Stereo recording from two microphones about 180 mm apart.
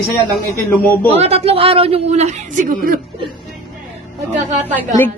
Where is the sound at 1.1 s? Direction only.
35° right (ahead or behind); by 3.0 s 50° right (ahead or behind).